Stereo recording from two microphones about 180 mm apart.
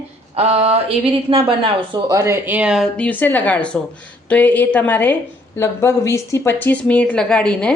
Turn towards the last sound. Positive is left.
turn(degrees=5)  # may be behind; listen again after turning